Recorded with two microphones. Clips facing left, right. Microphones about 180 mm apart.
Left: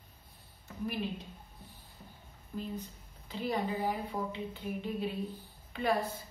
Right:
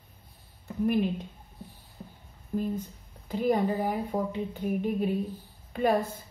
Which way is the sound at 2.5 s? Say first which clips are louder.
Right 9 dB; 50° right (ahead or behind).